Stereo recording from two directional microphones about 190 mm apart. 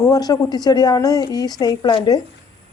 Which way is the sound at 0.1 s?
20° left (ahead or behind).